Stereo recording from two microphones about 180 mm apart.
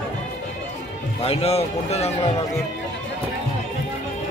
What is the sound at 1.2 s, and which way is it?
Speech, 35° left (ahead or behind).